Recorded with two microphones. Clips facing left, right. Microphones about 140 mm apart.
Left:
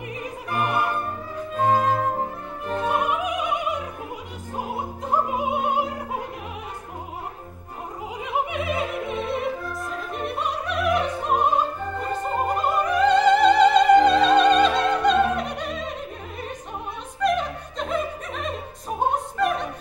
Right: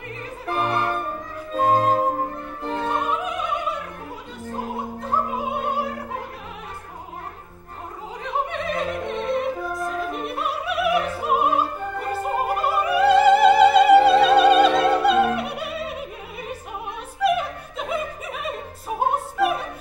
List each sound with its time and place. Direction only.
0.2 s opera: 15° left (ahead or behind)
1.5 s music: 35° right (ahead or behind)
2.9 s music: 15° left (ahead or behind)
5.1 s opera: 15° left (ahead or behind)
8.2 s opera: 10° left (ahead or behind); by 16.5 s 5° right (ahead or behind)
17.2 s music: 5° right (ahead or behind)
18.9 s opera: 5° right (ahead or behind)